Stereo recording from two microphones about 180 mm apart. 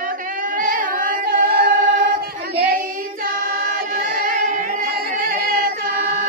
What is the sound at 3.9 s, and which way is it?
Singing, 50° right (ahead or behind).